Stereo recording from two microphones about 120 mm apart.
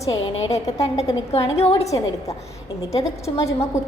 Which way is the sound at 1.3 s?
55° left (ahead or behind).